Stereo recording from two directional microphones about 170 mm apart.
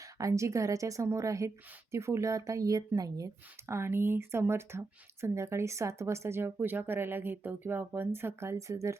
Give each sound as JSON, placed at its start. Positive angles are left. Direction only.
{"t": 0.0, "sound": "speech", "side_deg": -20}